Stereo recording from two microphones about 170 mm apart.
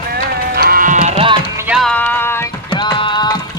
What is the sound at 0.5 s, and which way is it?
Music, 65° right (ahead or behind).